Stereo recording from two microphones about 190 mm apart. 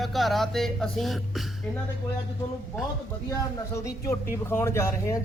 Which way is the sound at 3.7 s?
15° left (ahead or behind).